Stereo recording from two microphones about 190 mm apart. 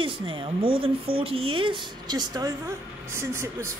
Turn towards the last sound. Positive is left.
turn(degrees=-15)  # may be behind; listen again after turning